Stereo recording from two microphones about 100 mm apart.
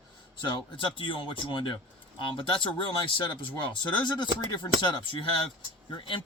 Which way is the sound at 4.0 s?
50° left (ahead or behind).